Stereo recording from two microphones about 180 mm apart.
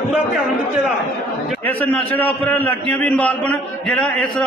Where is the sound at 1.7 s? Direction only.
10° left (ahead or behind).